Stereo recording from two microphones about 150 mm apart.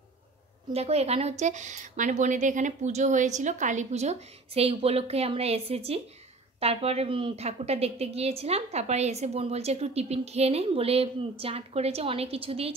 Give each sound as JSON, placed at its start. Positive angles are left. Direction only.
{"t": 0.7, "sound": "a woman's voice", "side_deg": -45}